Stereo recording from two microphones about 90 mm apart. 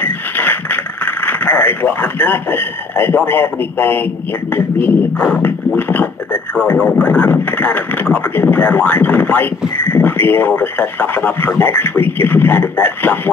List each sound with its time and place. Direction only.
0.0 s radio: 20° left (ahead or behind)
5.8 s beatboxing: 20° left (ahead or behind)
7.0 s speech: 20° left (ahead or behind)